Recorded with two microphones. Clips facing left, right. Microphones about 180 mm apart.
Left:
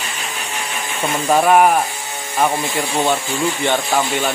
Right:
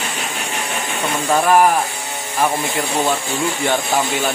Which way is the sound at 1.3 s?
Centre (ahead or behind).